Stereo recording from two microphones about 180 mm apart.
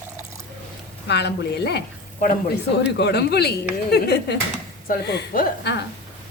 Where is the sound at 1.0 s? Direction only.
70° left (ahead or behind).